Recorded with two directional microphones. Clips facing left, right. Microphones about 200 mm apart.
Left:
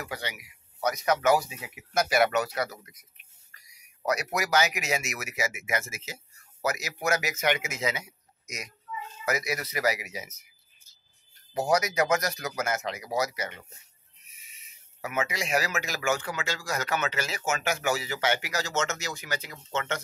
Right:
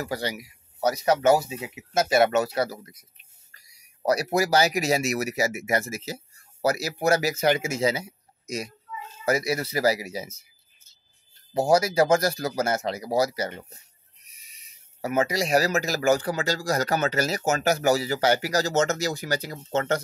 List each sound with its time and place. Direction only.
0.0 s speech: 35° right (ahead or behind)